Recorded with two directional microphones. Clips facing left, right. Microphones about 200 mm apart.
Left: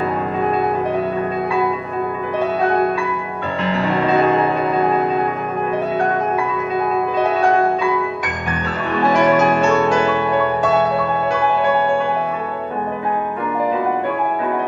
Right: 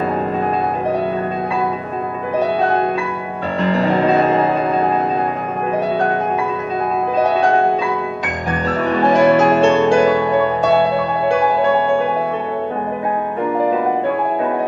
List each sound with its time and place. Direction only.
3.7 s music: 40° right (ahead or behind)
8.8 s music: 35° right (ahead or behind)